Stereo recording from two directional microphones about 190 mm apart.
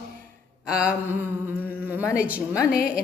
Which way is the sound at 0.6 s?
5° right (ahead or behind).